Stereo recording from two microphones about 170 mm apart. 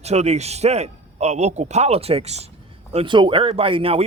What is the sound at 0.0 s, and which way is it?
A man's voice, 40° right (ahead or behind).